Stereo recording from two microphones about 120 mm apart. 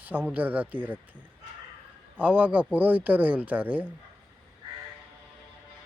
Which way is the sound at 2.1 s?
10° right (ahead or behind).